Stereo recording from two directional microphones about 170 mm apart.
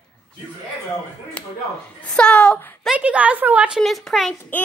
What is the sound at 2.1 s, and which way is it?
Speech, 5° left (ahead or behind).